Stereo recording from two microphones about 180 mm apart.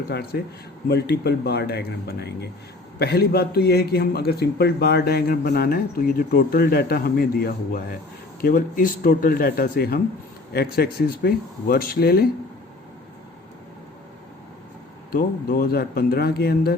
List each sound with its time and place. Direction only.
0.1 s a man's voice: 60° left (ahead or behind)
15.1 s a man's voice: 55° left (ahead or behind)